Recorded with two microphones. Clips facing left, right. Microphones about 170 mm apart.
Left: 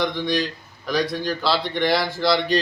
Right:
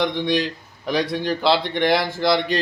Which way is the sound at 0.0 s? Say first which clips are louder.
Right 2 dB; 20° right (ahead or behind).